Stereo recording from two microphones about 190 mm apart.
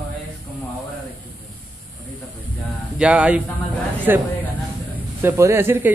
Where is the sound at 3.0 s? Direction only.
5° right (ahead or behind).